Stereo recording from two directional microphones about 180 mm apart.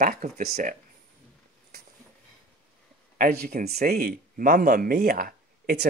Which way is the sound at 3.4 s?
55° right (ahead or behind).